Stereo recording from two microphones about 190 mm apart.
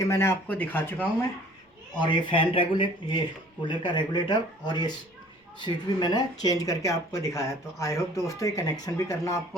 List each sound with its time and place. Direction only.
0.0 s speech: 15° left (ahead or behind)
2.0 s speech: 25° left (ahead or behind)